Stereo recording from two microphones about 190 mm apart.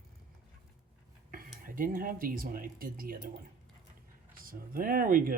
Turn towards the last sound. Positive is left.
turn(degrees=-50)  # may be behind; listen again after turning